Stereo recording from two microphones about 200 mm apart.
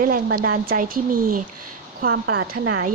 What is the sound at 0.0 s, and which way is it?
A woman's voice, 45° right (ahead or behind).